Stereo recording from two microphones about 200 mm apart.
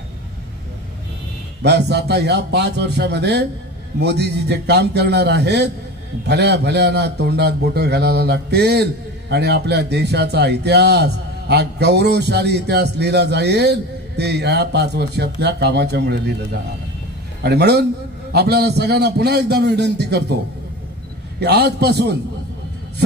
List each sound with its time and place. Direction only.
1.6 s speech: 55° right (ahead or behind)
17.4 s speech: 55° right (ahead or behind)
21.4 s speech: 55° right (ahead or behind)